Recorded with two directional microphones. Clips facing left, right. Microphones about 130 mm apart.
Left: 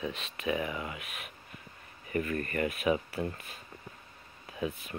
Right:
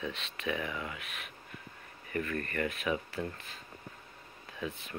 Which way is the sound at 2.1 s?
15° left (ahead or behind).